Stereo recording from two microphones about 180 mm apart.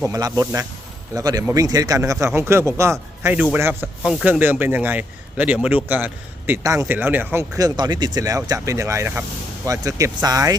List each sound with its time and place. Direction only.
0.0 s a man's voice: 20° right (ahead or behind)